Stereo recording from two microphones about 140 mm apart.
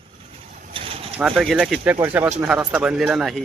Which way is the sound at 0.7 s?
40° right (ahead or behind).